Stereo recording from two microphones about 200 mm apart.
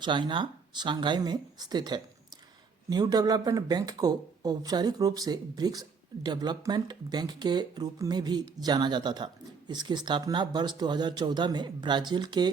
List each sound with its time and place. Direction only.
0.0 s speech: 25° right (ahead or behind)